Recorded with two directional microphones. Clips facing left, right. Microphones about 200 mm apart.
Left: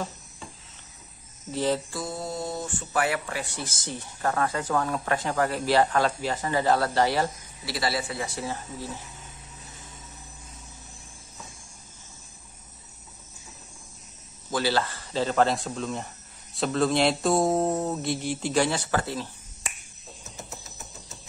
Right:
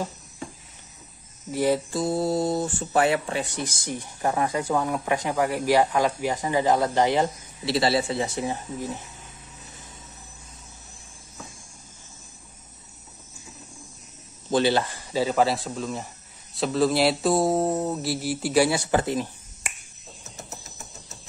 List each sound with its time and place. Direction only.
1.5 s speech: 10° right (ahead or behind)
2.0 s speech: 30° right (ahead or behind)
14.5 s speech: 20° right (ahead or behind); by 16.1 s 5° right (ahead or behind)
16.5 s mantra: centre (ahead or behind)